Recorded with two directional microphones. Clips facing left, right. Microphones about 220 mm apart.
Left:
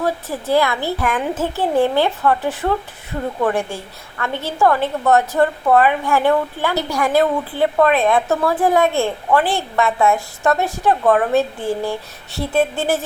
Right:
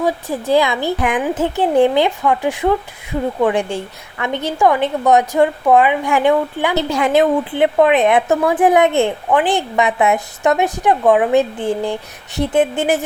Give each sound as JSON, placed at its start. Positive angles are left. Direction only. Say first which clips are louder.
{"t": 0.0, "sound": "a woman's voice", "louder": "right 3 dB", "side_deg": -15}